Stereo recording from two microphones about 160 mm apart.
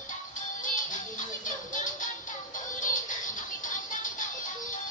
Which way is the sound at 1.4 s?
55° left (ahead or behind).